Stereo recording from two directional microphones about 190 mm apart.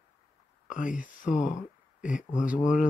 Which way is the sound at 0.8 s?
45° left (ahead or behind).